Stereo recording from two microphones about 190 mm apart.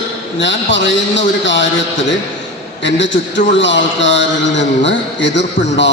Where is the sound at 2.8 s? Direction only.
70° left (ahead or behind).